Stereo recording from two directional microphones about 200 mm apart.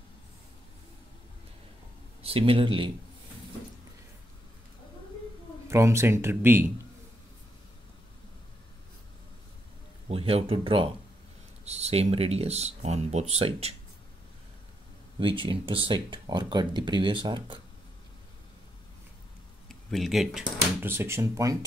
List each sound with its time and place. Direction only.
2.2 s speech: 30° right (ahead or behind)
5.7 s speech: 15° right (ahead or behind)
10.0 s speech: 30° right (ahead or behind)
15.1 s speech: 25° right (ahead or behind)
19.7 s speech: centre (ahead or behind)
20.8 s speech: 10° right (ahead or behind)